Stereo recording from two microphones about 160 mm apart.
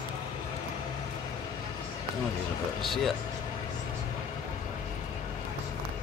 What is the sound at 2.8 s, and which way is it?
Speech, centre (ahead or behind).